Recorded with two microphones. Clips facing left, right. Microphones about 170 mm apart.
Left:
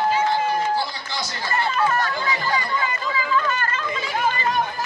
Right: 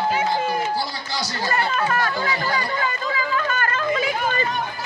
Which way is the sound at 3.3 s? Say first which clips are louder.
Left 3 dB; 55° right (ahead or behind).